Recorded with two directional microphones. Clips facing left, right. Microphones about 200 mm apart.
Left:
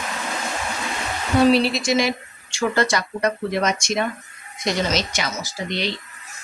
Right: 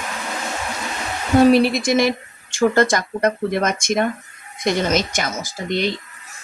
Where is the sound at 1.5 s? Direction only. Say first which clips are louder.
Right 3 dB; 50° right (ahead or behind).